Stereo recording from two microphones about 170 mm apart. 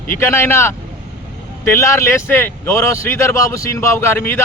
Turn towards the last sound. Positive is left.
turn(degrees=15)  # may be behind; listen again after turning